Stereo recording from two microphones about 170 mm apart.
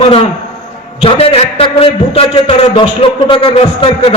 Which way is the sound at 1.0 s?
35° left (ahead or behind).